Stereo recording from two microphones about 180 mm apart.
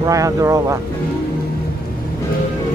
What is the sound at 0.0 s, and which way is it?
Speech, 20° right (ahead or behind).